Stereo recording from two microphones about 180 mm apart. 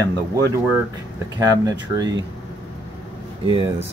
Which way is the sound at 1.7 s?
20° right (ahead or behind).